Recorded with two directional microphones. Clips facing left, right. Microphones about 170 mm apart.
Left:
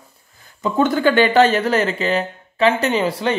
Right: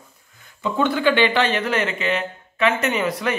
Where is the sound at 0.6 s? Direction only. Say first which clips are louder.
Left 4 dB; 40° left (ahead or behind).